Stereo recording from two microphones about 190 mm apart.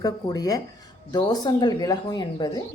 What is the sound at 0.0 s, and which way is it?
Speech, 20° left (ahead or behind).